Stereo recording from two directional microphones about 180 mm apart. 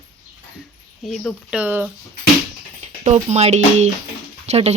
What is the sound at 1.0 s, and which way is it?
Speech, 5° left (ahead or behind).